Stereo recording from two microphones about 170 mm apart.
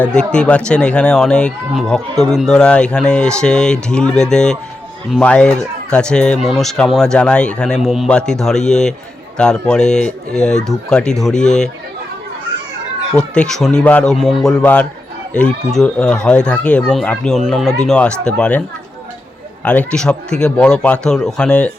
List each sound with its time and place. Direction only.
0.0 s speech: 5° left (ahead or behind)
13.1 s a man's voice: 5° left (ahead or behind)
19.6 s a man's voice: 10° left (ahead or behind)